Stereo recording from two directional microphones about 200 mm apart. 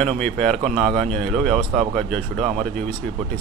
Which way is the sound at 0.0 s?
5° left (ahead or behind).